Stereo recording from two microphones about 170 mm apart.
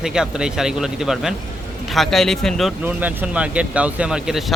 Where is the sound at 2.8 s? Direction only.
10° right (ahead or behind).